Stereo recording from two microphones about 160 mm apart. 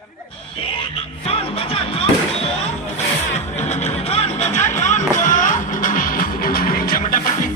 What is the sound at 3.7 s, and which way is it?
Music, 40° left (ahead or behind).